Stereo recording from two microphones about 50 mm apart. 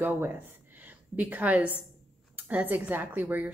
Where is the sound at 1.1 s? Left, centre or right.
Right.